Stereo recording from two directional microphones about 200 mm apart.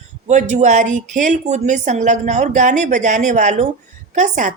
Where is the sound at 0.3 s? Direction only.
35° right (ahead or behind).